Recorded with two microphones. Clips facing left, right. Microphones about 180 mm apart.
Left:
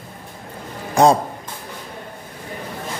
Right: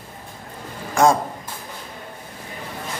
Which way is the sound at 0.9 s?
35° left (ahead or behind).